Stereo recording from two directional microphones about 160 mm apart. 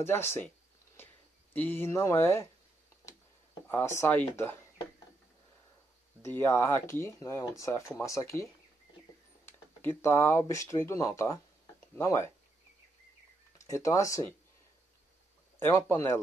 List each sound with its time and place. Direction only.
0.0 s speech: 15° left (ahead or behind)
1.5 s speech: 10° left (ahead or behind)
3.6 s speech: 15° left (ahead or behind)
6.2 s speech: 15° left (ahead or behind)
9.5 s speech: 15° left (ahead or behind)
13.6 s speech: 20° left (ahead or behind)
15.6 s speech: 15° left (ahead or behind)